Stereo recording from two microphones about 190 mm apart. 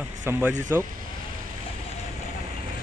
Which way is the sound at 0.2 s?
10° right (ahead or behind).